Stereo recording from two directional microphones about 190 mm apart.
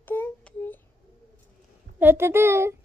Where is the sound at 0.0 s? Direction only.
10° left (ahead or behind).